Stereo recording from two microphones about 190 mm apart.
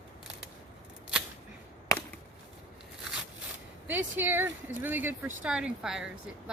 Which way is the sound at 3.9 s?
10° right (ahead or behind).